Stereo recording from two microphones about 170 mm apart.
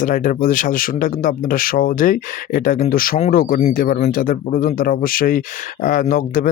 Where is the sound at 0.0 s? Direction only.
50° left (ahead or behind).